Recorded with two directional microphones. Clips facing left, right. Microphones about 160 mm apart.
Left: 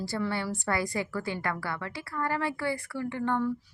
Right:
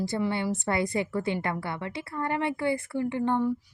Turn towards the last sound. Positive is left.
turn(degrees=-20)  # may be behind; listen again after turning